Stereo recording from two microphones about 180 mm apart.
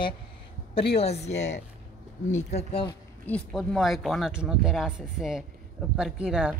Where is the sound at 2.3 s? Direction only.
35° left (ahead or behind).